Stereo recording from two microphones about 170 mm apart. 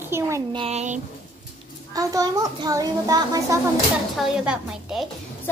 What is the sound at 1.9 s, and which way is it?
A child's voice, 20° right (ahead or behind).